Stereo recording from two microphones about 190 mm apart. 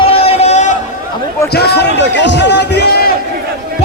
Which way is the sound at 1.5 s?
60° left (ahead or behind).